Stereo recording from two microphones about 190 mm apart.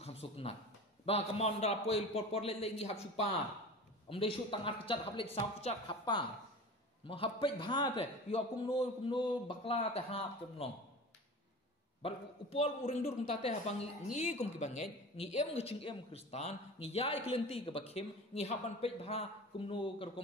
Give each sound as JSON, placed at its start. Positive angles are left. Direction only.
{"t": 0.0, "sound": "a man's voice", "side_deg": 30}
{"t": 12.0, "sound": "a man's voice", "side_deg": 30}